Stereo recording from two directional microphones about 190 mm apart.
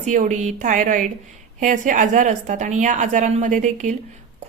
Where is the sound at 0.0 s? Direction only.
40° right (ahead or behind).